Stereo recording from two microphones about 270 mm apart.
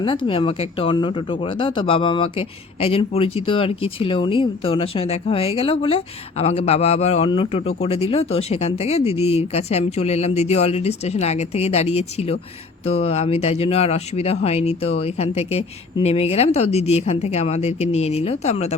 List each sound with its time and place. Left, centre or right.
0.0 s speech: centre